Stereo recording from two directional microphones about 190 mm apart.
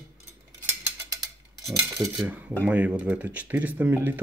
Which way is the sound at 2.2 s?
5° right (ahead or behind).